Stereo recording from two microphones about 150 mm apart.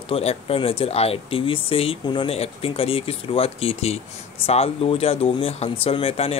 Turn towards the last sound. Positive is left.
turn(degrees=40)  # may be behind; listen again after turning